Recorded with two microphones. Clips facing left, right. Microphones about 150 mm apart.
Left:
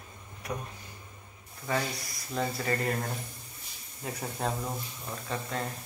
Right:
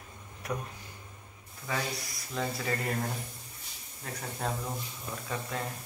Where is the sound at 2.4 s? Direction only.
Centre (ahead or behind).